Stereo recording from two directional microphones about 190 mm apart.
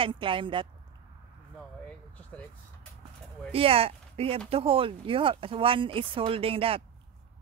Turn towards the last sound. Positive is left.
turn(degrees=-30)  # may be behind; listen again after turning